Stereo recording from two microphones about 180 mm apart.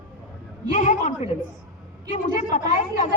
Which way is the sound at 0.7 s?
45° left (ahead or behind).